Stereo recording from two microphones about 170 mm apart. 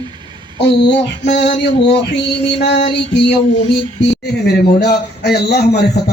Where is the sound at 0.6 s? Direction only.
90° left.